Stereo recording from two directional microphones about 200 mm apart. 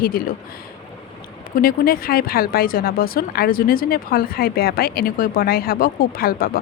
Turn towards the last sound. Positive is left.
turn(degrees=45)  # may be behind; listen again after turning